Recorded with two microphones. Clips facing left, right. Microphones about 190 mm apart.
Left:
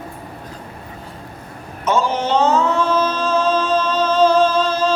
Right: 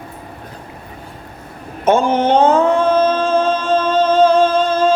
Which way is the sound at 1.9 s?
55° right (ahead or behind).